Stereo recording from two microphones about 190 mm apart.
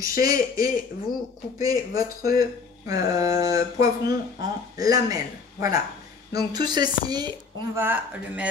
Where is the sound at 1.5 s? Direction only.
15° right (ahead or behind).